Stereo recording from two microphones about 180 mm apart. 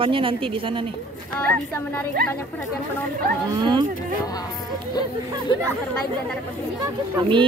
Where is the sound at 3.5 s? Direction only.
25° right (ahead or behind).